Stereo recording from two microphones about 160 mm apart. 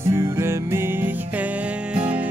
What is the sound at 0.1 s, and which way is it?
Music, 15° right (ahead or behind).